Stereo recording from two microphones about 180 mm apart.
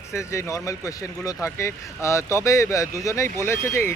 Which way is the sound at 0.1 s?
15° left (ahead or behind).